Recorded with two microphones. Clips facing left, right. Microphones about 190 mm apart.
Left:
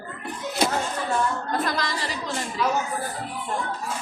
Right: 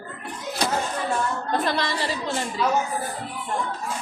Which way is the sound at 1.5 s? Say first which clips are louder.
Right 2 dB; 30° right (ahead or behind).